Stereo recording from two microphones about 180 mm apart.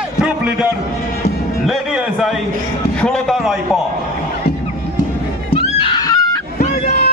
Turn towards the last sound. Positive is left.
turn(degrees=45)  # may be behind; listen again after turning